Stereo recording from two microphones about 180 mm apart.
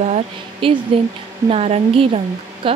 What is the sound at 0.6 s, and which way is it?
Speech, 30° right (ahead or behind).